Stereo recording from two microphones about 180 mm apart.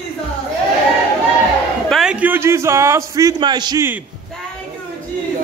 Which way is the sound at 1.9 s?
5° right (ahead or behind).